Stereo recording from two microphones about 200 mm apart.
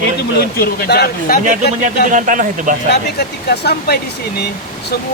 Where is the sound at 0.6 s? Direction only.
50° left (ahead or behind).